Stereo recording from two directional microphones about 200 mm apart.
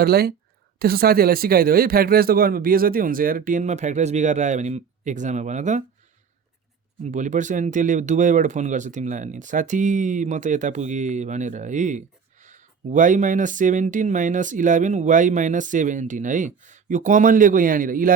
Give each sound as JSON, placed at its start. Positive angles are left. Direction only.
{"t": 0.0, "sound": "a man's voice", "side_deg": -50}
{"t": 7.0, "sound": "speech", "side_deg": -35}